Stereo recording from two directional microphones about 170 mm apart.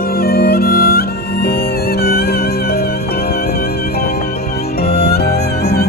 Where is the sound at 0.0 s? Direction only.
60° left (ahead or behind).